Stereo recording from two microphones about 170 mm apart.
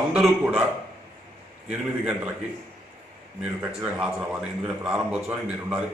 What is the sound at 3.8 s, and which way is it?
A man's voice, 5° right (ahead or behind).